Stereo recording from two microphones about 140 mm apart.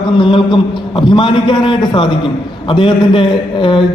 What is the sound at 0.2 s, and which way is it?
A man's voice, 35° left (ahead or behind).